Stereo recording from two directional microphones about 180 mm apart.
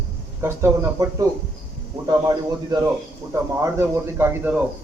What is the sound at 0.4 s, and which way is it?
A man's voice, 15° right (ahead or behind).